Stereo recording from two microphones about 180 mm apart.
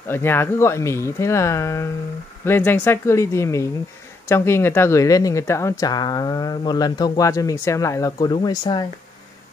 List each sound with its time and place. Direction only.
0.1 s speech: 10° left (ahead or behind)